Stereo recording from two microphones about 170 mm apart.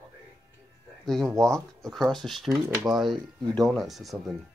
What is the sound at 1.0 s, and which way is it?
Speech, centre (ahead or behind).